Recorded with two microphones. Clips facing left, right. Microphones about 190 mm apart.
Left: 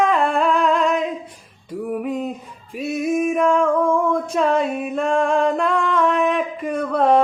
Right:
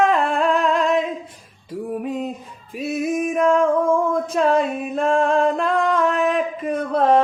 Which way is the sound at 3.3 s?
35° right (ahead or behind).